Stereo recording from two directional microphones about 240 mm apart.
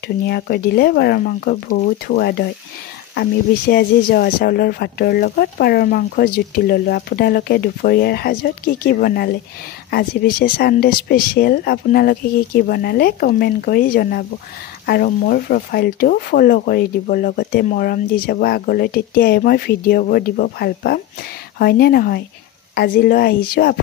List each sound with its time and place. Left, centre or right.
0.3 s speech: left